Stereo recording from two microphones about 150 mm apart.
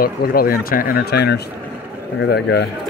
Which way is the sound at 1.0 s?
90° left.